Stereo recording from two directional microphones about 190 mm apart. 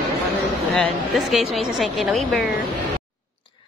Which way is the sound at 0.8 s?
Centre (ahead or behind).